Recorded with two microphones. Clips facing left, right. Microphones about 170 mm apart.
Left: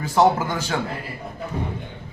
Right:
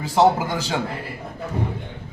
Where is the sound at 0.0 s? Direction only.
15° right (ahead or behind).